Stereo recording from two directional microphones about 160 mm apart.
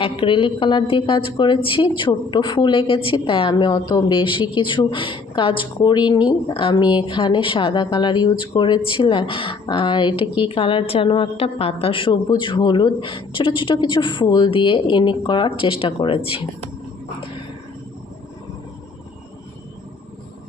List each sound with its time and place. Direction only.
0.0 s a woman's voice: 35° left (ahead or behind)